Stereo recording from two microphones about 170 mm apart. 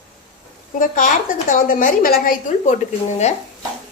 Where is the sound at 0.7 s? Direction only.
50° left (ahead or behind).